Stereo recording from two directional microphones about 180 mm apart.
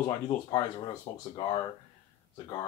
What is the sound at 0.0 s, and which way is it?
Speech, 25° left (ahead or behind).